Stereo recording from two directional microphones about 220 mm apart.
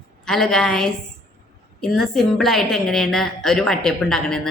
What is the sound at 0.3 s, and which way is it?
A woman's voice, centre (ahead or behind).